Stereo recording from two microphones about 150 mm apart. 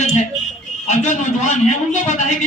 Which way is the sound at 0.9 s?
55° left (ahead or behind).